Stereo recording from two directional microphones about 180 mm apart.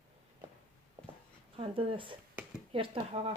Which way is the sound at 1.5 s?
30° right (ahead or behind).